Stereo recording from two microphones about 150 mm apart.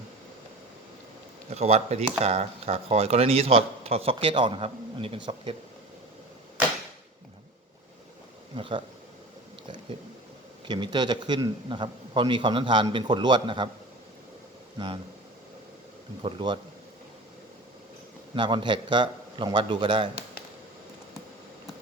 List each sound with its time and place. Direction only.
1.5 s a man's voice: 45° right (ahead or behind)
8.5 s a man's voice: 35° right (ahead or behind)
10.7 s a man's voice: 30° right (ahead or behind)
16.2 s a man's voice: 30° right (ahead or behind)
18.3 s a man's voice: 35° right (ahead or behind)